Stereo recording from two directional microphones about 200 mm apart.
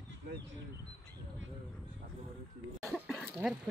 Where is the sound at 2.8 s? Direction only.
Centre (ahead or behind).